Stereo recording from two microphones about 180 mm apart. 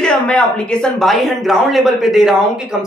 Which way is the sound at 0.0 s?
5° left (ahead or behind).